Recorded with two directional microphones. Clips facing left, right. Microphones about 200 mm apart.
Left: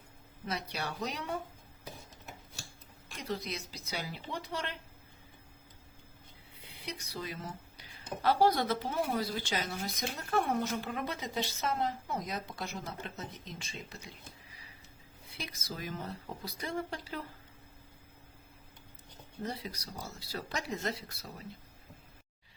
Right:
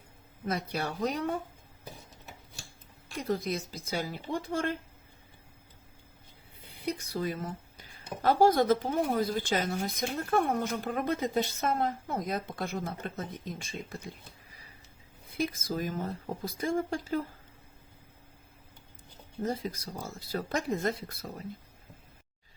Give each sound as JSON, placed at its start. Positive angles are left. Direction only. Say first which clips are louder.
{"t": 0.4, "sound": "speech", "louder": "right 5 dB", "side_deg": -50}
{"t": 3.2, "sound": "speech", "louder": "right 7 dB", "side_deg": -50}
{"t": 6.6, "sound": "speech", "louder": "right 9 dB", "side_deg": -50}
{"t": 19.4, "sound": "speech", "louder": "right 7 dB", "side_deg": -45}